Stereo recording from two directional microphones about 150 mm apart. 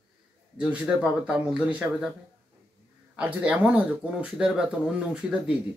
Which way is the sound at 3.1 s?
10° right (ahead or behind).